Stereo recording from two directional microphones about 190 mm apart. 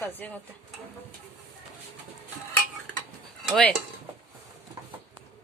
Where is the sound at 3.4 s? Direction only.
5° left (ahead or behind).